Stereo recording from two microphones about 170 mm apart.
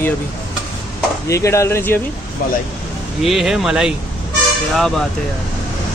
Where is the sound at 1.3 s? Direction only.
15° left (ahead or behind).